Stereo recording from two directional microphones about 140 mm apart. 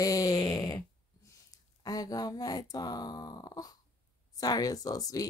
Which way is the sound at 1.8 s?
25° left (ahead or behind).